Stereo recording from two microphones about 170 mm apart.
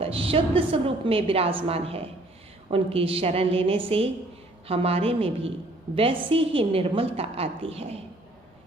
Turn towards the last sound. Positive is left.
turn(degrees=-35)  # may be behind; listen again after turning